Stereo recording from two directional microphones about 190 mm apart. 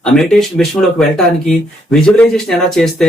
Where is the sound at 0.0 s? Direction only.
5° left (ahead or behind).